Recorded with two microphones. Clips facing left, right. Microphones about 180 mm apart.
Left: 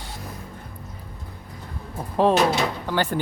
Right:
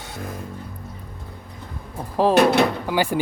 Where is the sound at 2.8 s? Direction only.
10° right (ahead or behind).